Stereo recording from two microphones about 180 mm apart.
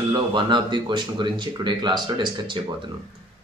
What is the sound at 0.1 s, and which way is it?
Speech, 25° right (ahead or behind).